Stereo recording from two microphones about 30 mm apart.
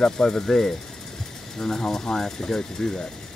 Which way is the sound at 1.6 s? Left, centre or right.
Centre.